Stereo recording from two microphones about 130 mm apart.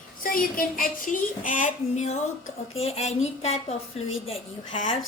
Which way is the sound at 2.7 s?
50° left (ahead or behind).